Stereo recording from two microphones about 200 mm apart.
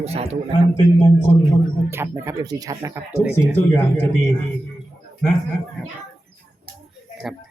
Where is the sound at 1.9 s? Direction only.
10° right (ahead or behind).